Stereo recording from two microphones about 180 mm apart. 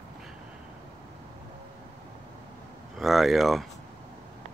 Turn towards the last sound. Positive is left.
turn(degrees=0)  # may be behind; listen again after turning